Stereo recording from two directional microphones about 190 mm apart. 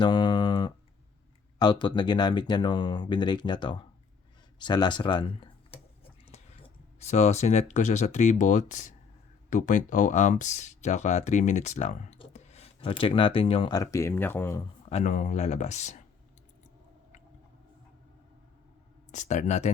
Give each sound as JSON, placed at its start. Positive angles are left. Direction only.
{"t": 0.0, "sound": "a sound", "side_deg": 25}
{"t": 1.5, "sound": "speech", "side_deg": 25}
{"t": 14.8, "sound": "speech", "side_deg": 35}
{"t": 19.1, "sound": "speech", "side_deg": 40}